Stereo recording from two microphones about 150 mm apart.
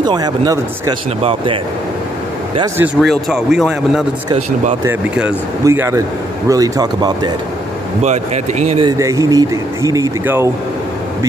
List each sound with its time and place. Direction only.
0.0 s speech: 25° right (ahead or behind)
3.0 s a man's voice: centre (ahead or behind)
5.7 s speech: 20° right (ahead or behind)
8.0 s speech: 50° right (ahead or behind)
8.8 s speech: 20° right (ahead or behind)